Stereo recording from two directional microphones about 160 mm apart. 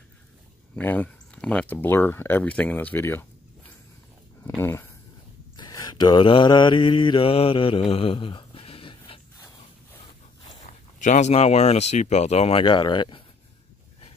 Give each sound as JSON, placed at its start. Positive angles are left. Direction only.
{"t": 0.7, "sound": "speech", "side_deg": 10}
{"t": 4.6, "sound": "speech", "side_deg": 15}
{"t": 5.6, "sound": "mantra", "side_deg": 25}
{"t": 10.6, "sound": "speech", "side_deg": 50}